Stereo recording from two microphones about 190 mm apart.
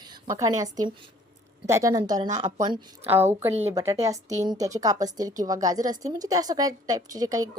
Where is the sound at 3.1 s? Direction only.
10° right (ahead or behind).